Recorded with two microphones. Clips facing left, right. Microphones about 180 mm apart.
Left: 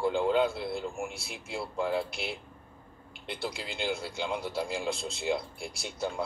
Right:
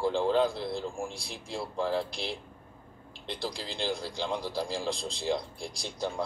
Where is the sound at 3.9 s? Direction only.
5° left (ahead or behind).